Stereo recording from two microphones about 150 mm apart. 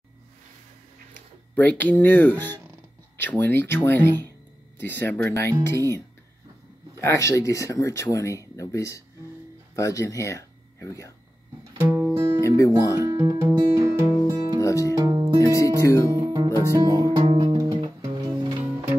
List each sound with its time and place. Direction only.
1.5 s speech: 10° left (ahead or behind)
7.0 s speech: 20° left (ahead or behind)
11.8 s music: 15° right (ahead or behind)
12.4 s speech: 20° left (ahead or behind)
12.9 s speech: 20° right (ahead or behind)
13.6 s music: 20° right (ahead or behind)
14.6 s speech: 20° left (ahead or behind)
15.0 s music: 25° right (ahead or behind)
15.5 s speech: 20° left (ahead or behind)
16.1 s music: 25° right (ahead or behind)
17.3 s music: 35° right (ahead or behind)